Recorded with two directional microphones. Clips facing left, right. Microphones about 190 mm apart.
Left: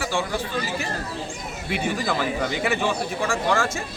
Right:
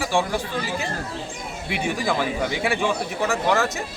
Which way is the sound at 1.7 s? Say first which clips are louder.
Right 1 dB; 15° right (ahead or behind).